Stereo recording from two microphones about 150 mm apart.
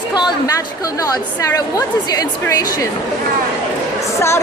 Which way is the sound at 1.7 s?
25° left (ahead or behind).